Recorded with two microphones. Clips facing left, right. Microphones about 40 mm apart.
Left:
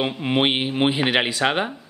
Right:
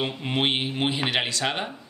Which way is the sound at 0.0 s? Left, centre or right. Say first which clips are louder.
Left 5 dB; centre.